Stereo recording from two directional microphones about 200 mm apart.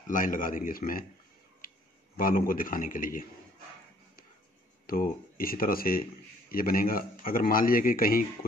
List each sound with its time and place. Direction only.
0.0 s speech: 40° left (ahead or behind)
2.1 s speech: 45° left (ahead or behind)
4.8 s speech: 45° left (ahead or behind)